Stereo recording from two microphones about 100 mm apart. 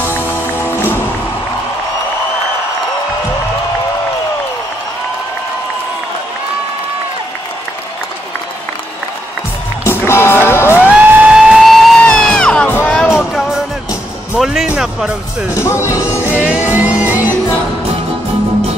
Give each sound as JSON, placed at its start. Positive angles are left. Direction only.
{"t": 0.0, "sound": "music", "side_deg": 20}
{"t": 9.8, "sound": "music", "side_deg": 25}
{"t": 10.8, "sound": "music", "side_deg": -10}
{"t": 13.3, "sound": "music", "side_deg": -5}
{"t": 15.5, "sound": "music", "side_deg": 30}
{"t": 16.3, "sound": "music", "side_deg": -15}